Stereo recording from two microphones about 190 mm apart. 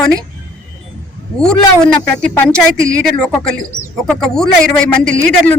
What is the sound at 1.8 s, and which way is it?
A man's voice, 5° left (ahead or behind).